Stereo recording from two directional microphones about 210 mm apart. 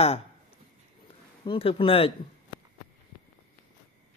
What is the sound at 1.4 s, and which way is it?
Speech, 25° left (ahead or behind).